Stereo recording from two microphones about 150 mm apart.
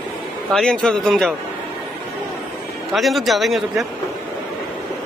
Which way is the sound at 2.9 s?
Centre (ahead or behind).